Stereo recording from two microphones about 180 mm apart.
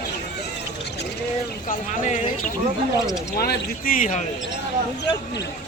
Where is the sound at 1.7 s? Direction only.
40° left (ahead or behind).